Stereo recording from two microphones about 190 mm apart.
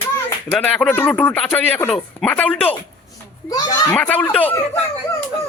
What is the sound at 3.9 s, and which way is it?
Speech, 5° left (ahead or behind).